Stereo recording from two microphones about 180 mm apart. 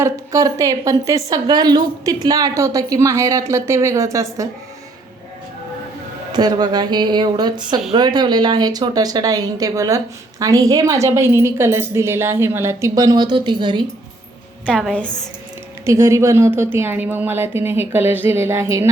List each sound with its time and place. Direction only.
0.0 s a woman's voice: 20° right (ahead or behind)
6.3 s a woman's voice: 25° right (ahead or behind)
14.7 s a woman's voice: 5° left (ahead or behind)
15.9 s a woman's voice: 15° right (ahead or behind)